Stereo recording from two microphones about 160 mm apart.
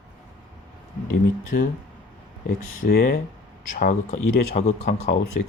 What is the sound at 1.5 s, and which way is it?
Speech, 70° left (ahead or behind).